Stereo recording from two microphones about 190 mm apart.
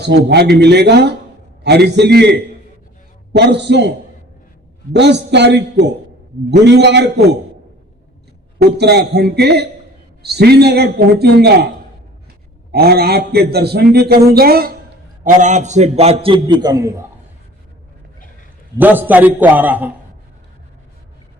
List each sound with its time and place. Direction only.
0.0 s a man's voice: 60° right (ahead or behind)
8.6 s a man's voice: 60° right (ahead or behind)
12.7 s a man's voice: 55° right (ahead or behind)
15.2 s a man's voice: 40° right (ahead or behind); by 16.9 s 20° right (ahead or behind)
18.8 s a man's voice: 10° right (ahead or behind)